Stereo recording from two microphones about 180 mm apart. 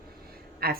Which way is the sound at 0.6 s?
55° right (ahead or behind).